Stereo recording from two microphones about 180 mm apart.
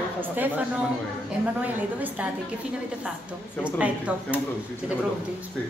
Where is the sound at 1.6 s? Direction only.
10° right (ahead or behind).